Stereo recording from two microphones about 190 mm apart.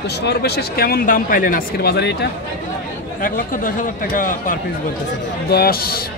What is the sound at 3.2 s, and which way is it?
Speech, 45° left (ahead or behind).